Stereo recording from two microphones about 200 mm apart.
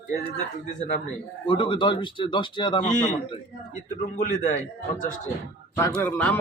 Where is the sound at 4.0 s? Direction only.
40° left (ahead or behind).